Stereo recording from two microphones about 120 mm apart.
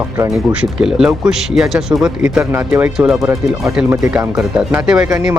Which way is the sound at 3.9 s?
20° right (ahead or behind).